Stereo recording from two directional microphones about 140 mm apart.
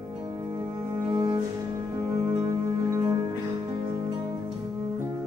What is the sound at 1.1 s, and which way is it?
Cello, 30° right (ahead or behind).